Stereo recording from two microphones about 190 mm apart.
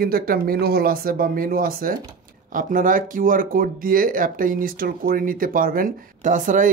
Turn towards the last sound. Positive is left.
turn(degrees=-45)  # may be behind; listen again after turning